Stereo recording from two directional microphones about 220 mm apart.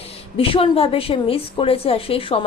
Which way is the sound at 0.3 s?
25° left (ahead or behind).